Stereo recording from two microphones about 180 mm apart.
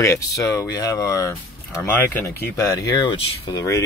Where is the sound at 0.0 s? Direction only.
15° left (ahead or behind).